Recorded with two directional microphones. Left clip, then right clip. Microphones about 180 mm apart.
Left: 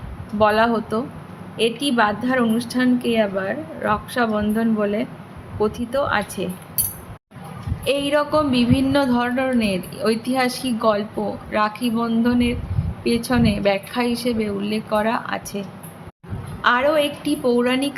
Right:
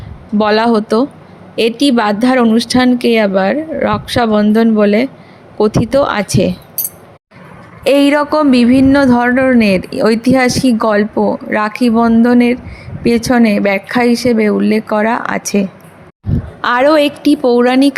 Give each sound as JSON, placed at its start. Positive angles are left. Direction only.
{"t": 0.3, "sound": "a woman's voice", "side_deg": -50}
{"t": 7.9, "sound": "a woman's voice", "side_deg": -50}